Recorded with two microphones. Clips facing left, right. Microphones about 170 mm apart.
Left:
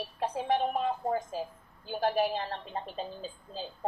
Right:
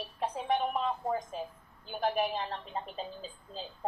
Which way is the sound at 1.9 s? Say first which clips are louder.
Left 3 dB; 30° left (ahead or behind).